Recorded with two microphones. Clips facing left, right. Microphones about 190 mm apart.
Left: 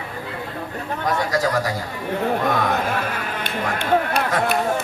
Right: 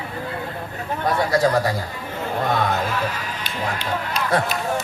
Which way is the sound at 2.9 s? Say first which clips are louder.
Left 1 dB; 55° left (ahead or behind).